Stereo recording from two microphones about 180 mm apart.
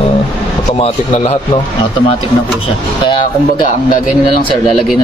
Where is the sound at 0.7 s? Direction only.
35° left (ahead or behind).